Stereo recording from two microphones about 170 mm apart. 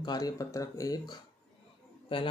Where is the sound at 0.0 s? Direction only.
25° left (ahead or behind).